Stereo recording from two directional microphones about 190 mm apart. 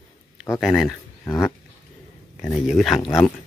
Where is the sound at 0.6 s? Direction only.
Centre (ahead or behind).